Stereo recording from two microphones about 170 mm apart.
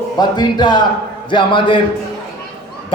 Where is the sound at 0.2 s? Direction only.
25° left (ahead or behind).